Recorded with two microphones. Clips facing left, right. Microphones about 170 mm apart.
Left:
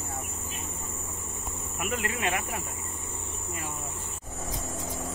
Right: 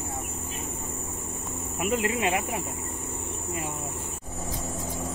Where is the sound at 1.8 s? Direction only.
25° right (ahead or behind).